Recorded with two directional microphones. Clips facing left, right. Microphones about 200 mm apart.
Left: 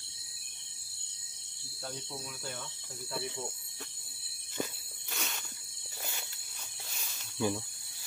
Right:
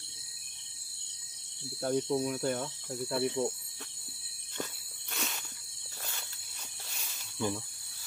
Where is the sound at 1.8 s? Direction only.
60° right (ahead or behind).